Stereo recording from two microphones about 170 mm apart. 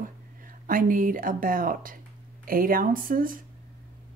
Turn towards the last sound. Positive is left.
turn(degrees=-55)  # may be behind; listen again after turning